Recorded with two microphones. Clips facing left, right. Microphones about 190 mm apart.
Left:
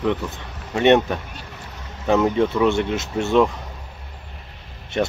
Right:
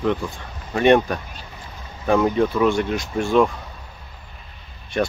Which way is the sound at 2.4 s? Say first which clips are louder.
Even; 25° left (ahead or behind).